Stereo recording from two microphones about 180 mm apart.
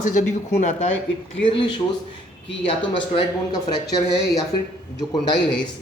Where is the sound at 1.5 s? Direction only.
25° left (ahead or behind).